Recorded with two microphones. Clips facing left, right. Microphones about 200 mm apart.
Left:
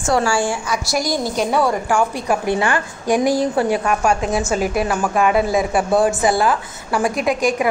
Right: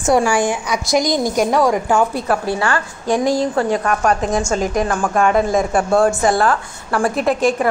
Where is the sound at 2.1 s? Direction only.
15° left (ahead or behind).